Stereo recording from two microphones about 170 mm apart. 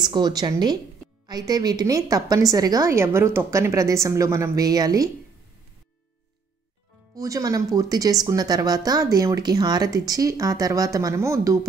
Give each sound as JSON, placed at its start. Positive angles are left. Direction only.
{"t": 0.0, "sound": "a woman's voice", "side_deg": -25}
{"t": 7.2, "sound": "a woman's voice", "side_deg": -20}